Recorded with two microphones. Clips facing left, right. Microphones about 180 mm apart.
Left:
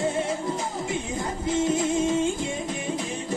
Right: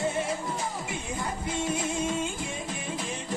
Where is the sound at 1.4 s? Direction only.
25° left (ahead or behind).